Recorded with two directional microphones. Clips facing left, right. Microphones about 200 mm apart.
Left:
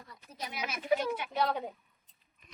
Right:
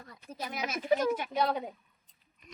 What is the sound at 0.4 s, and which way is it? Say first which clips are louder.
Speech: right 3 dB; 45° right (ahead or behind).